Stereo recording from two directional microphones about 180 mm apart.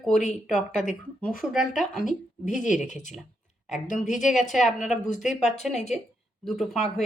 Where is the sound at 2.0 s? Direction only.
45° left (ahead or behind).